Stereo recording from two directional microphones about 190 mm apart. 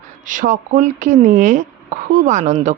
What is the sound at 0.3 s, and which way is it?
A woman's voice, 45° right (ahead or behind).